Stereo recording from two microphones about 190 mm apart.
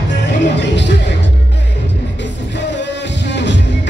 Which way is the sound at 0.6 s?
65° left (ahead or behind).